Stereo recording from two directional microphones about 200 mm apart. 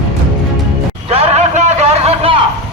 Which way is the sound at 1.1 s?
30° right (ahead or behind).